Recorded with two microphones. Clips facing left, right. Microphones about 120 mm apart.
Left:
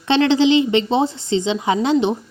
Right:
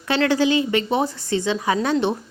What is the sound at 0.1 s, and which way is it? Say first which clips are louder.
A woman's voice: left 4 dB; 20° left (ahead or behind).